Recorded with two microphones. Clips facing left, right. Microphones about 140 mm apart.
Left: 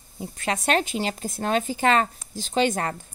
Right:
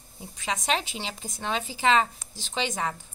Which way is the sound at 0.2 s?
55° left (ahead or behind).